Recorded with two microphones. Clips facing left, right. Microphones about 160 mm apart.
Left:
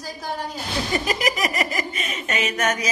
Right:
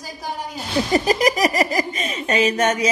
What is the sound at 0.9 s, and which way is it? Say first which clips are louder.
Speech: right 7 dB; 35° right (ahead or behind).